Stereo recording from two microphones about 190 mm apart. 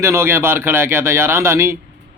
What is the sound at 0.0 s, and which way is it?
Speech, 15° right (ahead or behind).